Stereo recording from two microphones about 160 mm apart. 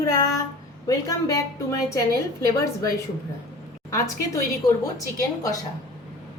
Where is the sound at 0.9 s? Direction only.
20° left (ahead or behind).